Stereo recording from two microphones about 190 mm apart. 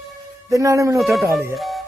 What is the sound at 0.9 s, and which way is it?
Speech, centre (ahead or behind).